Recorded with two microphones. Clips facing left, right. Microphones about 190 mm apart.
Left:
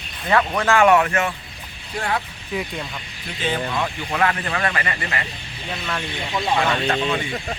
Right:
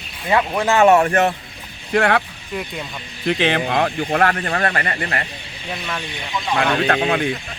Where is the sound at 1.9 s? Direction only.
70° right (ahead or behind).